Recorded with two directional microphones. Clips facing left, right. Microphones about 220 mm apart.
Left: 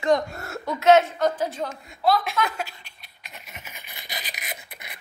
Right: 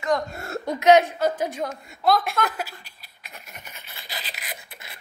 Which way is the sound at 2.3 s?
5° right (ahead or behind).